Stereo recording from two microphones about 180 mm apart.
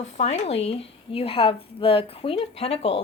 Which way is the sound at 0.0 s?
40° left (ahead or behind).